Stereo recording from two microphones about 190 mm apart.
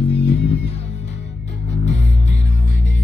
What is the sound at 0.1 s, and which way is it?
Music, 35° left (ahead or behind).